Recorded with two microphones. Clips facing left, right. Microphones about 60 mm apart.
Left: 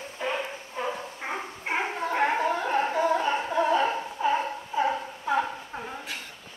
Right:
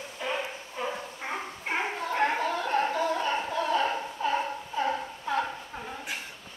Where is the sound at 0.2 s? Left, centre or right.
Centre.